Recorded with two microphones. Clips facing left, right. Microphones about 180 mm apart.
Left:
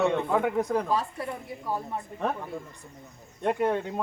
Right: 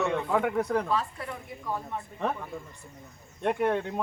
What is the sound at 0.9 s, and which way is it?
Speech, 35° left (ahead or behind).